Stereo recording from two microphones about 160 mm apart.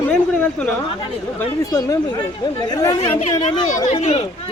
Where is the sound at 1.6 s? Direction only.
20° left (ahead or behind).